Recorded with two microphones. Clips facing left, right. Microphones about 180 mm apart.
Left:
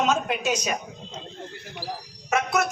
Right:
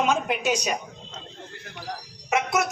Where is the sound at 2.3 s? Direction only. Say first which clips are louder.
Even; 20° right (ahead or behind).